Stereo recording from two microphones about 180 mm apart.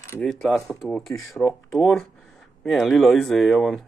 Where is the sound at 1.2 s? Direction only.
15° left (ahead or behind).